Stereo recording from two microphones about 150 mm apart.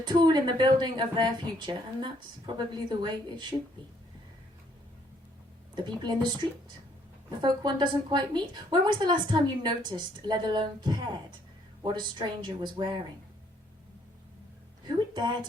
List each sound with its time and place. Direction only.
0.0 s a woman's voice: 30° right (ahead or behind)
5.7 s a woman's voice: 30° right (ahead or behind)
7.4 s a woman's voice: 30° right (ahead or behind)
14.8 s a woman's voice: 30° right (ahead or behind)